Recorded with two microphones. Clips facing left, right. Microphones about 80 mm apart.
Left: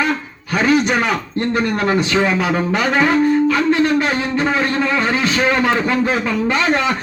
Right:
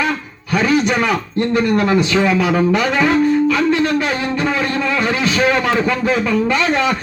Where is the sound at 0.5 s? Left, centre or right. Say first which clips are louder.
Even; left.